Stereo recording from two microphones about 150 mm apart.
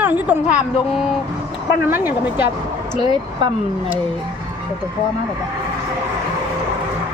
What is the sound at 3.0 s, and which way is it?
Speech, 30° right (ahead or behind).